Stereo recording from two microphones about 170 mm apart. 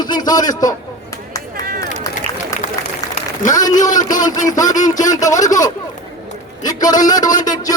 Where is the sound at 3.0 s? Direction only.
20° left (ahead or behind).